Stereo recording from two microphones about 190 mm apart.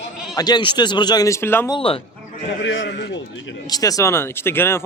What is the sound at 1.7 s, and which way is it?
Speech, 30° left (ahead or behind).